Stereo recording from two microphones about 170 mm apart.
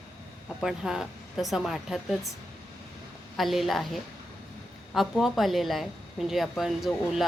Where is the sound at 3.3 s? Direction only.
Centre (ahead or behind).